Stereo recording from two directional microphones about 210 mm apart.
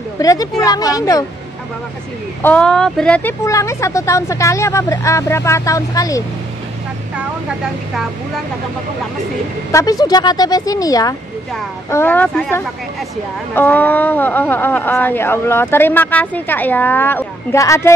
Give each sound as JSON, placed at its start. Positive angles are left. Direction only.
{"t": 0.2, "sound": "speech", "side_deg": 15}
{"t": 2.4, "sound": "speech", "side_deg": 5}
{"t": 9.7, "sound": "speech", "side_deg": 15}